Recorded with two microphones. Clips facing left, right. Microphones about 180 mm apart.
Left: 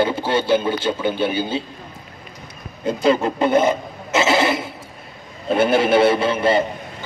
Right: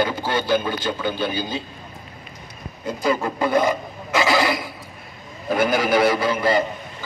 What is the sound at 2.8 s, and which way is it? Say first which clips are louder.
Speech: left 5 dB; 25° left (ahead or behind).